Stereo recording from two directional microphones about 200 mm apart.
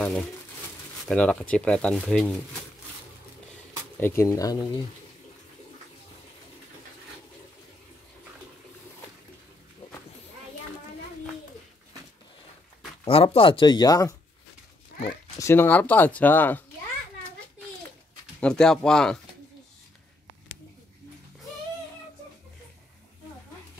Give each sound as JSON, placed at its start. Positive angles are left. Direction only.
{"t": 1.0, "sound": "speech", "side_deg": 5}
{"t": 4.0, "sound": "speech", "side_deg": 10}
{"t": 13.0, "sound": "speech", "side_deg": 30}
{"t": 15.3, "sound": "speech", "side_deg": 10}
{"t": 18.4, "sound": "speech", "side_deg": 5}